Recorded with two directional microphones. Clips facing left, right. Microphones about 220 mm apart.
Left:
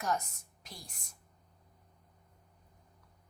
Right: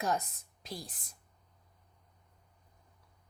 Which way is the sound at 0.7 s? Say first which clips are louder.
Right 9 dB; 35° right (ahead or behind).